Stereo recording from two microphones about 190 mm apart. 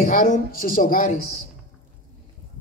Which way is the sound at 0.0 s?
45° left (ahead or behind).